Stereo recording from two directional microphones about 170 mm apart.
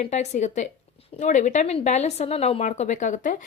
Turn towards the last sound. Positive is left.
turn(degrees=50)  # may be behind; listen again after turning